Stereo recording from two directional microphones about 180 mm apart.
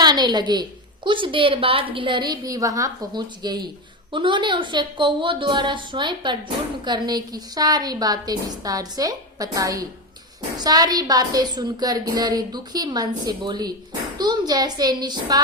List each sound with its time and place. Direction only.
0.0 s a woman's voice: 25° right (ahead or behind)